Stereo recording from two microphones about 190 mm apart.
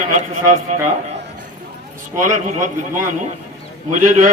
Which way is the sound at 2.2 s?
40° right (ahead or behind).